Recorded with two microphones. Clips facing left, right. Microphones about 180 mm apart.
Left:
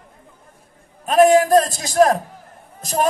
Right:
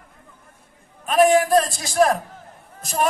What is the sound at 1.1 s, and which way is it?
A man's voice, 40° left (ahead or behind).